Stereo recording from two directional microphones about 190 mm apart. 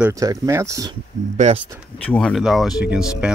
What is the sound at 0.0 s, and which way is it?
Speech, 15° right (ahead or behind).